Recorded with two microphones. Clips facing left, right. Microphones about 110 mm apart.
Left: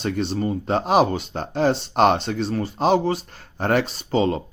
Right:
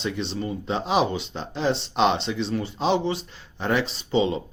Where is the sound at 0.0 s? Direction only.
50° left (ahead or behind).